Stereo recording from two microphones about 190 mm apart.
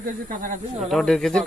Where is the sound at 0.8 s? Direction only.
Centre (ahead or behind).